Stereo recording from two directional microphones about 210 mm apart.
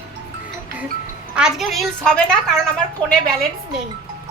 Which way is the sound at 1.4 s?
Centre (ahead or behind).